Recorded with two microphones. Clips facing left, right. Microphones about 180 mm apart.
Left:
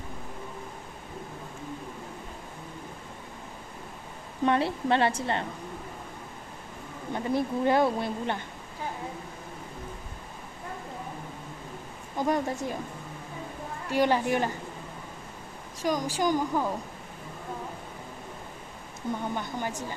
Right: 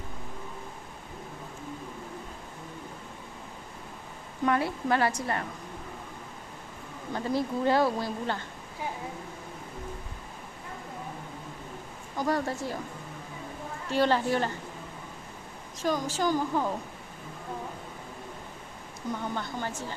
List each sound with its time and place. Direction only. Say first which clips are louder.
4.4 s a woman's voice: left 2 dB; 25° left (ahead or behind)
7.1 s a woman's voice: left 1 dB; 20° left (ahead or behind)
12.1 s a woman's voice: left 1 dB; 20° left (ahead or behind)
13.9 s a woman's voice: left 1 dB; 15° left (ahead or behind)
15.8 s a woman's voice: left 1 dB; 15° left (ahead or behind)
19.2 s a woman's voice: left 1 dB; 15° left (ahead or behind)